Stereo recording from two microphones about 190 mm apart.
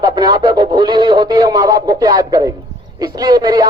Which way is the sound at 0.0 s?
20° right (ahead or behind).